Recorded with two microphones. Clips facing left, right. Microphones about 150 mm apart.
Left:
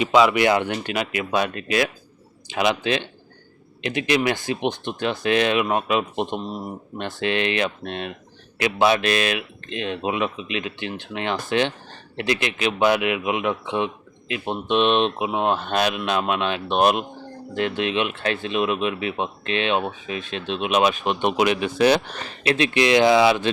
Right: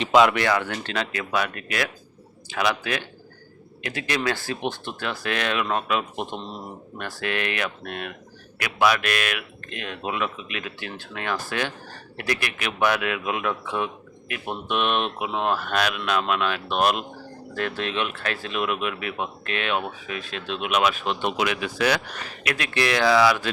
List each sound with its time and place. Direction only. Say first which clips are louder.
0.1 s speech: even; centre (ahead or behind)
0.3 s a man's voice: left 4 dB; 20° left (ahead or behind)